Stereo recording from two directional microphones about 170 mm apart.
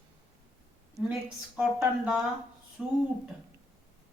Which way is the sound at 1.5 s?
5° right (ahead or behind).